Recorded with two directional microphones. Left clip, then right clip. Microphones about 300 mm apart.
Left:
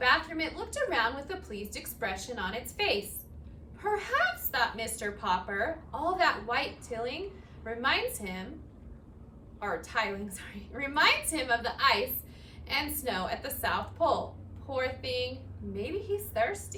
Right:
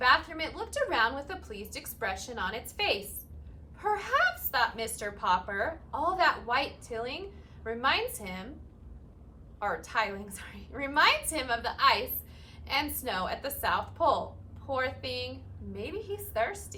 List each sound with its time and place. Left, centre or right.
0.0 s a woman's voice: centre
9.6 s a woman's voice: centre